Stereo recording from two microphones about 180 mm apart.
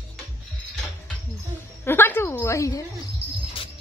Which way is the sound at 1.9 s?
10° left (ahead or behind).